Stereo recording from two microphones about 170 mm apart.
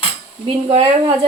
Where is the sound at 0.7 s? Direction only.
35° right (ahead or behind).